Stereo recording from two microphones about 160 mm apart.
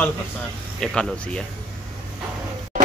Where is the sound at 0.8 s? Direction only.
5° left (ahead or behind).